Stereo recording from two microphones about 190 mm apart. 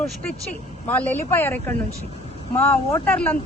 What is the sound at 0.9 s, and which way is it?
Speech, 10° left (ahead or behind).